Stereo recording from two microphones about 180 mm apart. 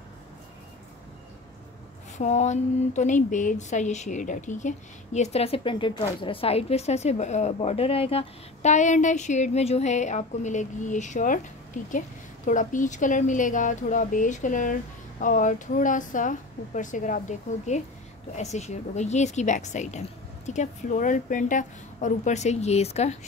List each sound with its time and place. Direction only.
2.1 s speech: 40° left (ahead or behind)